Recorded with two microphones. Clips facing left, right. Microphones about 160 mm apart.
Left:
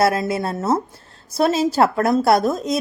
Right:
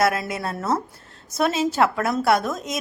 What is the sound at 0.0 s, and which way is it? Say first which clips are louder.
A woman's voice: left 4 dB; 30° left (ahead or behind).